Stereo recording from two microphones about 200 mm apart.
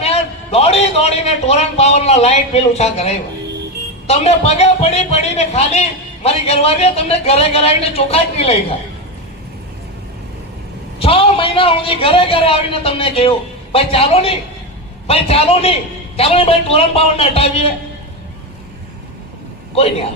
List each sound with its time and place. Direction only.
0.0 s a man's voice: 30° left (ahead or behind)
11.0 s a man's voice: 30° left (ahead or behind)
19.7 s a man's voice: 30° left (ahead or behind)